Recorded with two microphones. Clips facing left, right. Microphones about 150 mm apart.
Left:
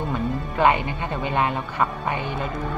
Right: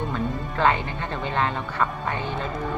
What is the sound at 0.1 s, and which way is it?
Speech, 15° left (ahead or behind).